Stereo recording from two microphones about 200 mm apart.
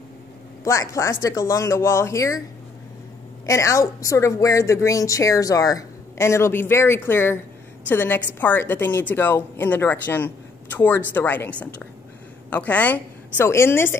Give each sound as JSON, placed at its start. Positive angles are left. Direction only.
{"t": 0.7, "sound": "a woman's voice", "side_deg": 15}
{"t": 3.4, "sound": "a woman's voice", "side_deg": 15}